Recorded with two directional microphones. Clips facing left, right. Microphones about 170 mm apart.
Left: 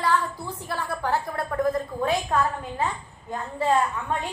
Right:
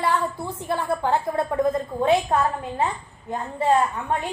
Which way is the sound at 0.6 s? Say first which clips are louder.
Right 5 dB; 20° right (ahead or behind).